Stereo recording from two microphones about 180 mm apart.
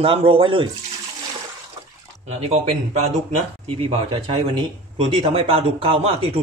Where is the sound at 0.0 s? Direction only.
30° right (ahead or behind).